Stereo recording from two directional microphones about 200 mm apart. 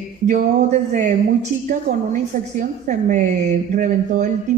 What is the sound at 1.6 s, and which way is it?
Speech, 40° right (ahead or behind).